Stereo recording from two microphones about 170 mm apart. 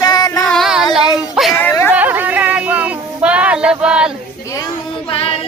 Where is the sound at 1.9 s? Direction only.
10° right (ahead or behind).